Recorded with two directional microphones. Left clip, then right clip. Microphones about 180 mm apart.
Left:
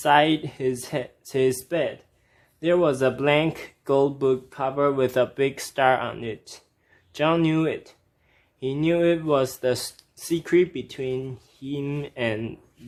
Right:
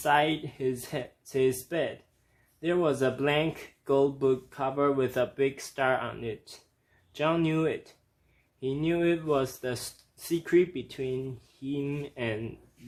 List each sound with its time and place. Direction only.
0.0 s speech: 35° left (ahead or behind)